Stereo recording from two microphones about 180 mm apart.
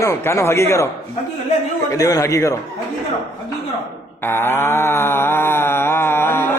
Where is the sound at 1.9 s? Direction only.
20° left (ahead or behind).